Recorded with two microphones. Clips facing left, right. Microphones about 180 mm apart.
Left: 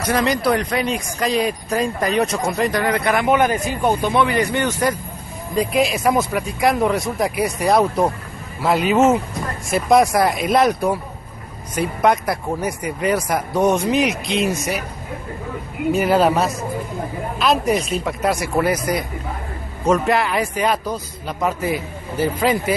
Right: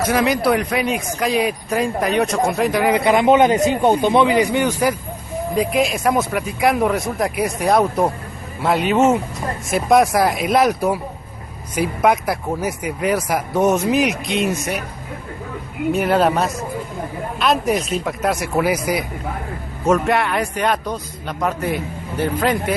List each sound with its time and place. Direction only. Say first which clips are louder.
0.0 s speech: right 2 dB; 5° right (ahead or behind)
2.8 s a man's voice: right 4 dB; 15° right (ahead or behind)
5.6 s speech: left 1 dB; centre (ahead or behind)
15.9 s speech: left 1 dB; centre (ahead or behind)